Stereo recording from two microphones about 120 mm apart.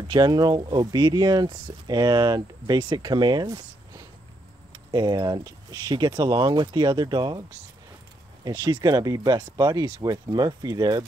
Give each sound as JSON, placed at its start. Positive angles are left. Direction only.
{"t": 0.1, "sound": "speech", "side_deg": -35}
{"t": 8.5, "sound": "speech", "side_deg": -35}